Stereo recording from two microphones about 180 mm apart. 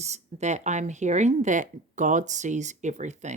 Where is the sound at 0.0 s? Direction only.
40° right (ahead or behind).